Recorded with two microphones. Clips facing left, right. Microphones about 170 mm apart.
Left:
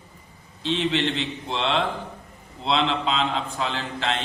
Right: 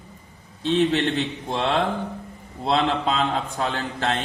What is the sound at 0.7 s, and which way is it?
A man's voice, 50° right (ahead or behind).